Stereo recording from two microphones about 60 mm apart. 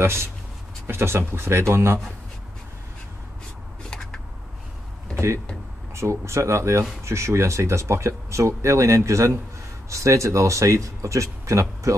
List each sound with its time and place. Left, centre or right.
0.0 s speech: right
3.9 s a sound: centre
5.9 s speech: right